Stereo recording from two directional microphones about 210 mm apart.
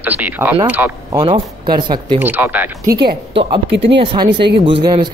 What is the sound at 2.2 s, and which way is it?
Speech, 10° right (ahead or behind).